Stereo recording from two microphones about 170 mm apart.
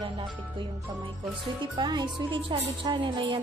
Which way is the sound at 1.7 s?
25° right (ahead or behind).